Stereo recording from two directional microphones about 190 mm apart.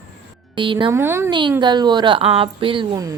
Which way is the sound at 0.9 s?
15° right (ahead or behind).